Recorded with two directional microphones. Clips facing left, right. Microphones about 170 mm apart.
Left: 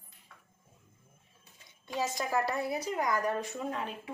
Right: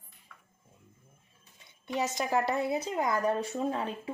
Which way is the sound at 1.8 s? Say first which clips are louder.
Right 2 dB; 20° right (ahead or behind).